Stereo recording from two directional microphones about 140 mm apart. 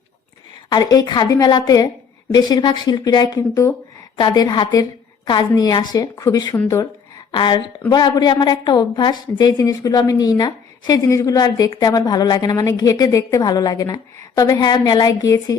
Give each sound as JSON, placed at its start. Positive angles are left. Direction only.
{"t": 0.7, "sound": "a woman's voice", "side_deg": 30}
{"t": 4.2, "sound": "a woman's voice", "side_deg": 30}